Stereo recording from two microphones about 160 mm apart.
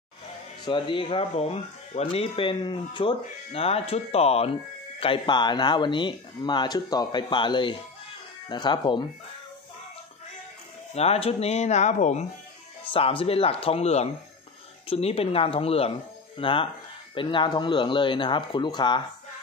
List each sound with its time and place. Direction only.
0.7 s speech: 30° left (ahead or behind)
11.0 s speech: 40° left (ahead or behind)
12.8 s speech: 35° left (ahead or behind)